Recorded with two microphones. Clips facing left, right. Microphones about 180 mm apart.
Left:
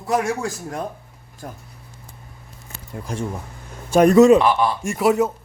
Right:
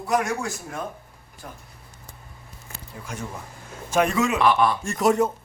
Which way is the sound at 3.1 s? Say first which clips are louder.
Left 7 dB; 35° left (ahead or behind).